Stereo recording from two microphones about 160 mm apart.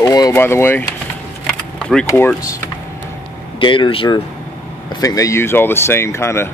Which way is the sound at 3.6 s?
30° left (ahead or behind).